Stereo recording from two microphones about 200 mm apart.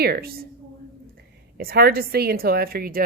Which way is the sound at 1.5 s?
50° right (ahead or behind).